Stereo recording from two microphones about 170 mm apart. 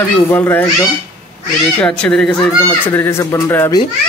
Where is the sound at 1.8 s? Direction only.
5° left (ahead or behind).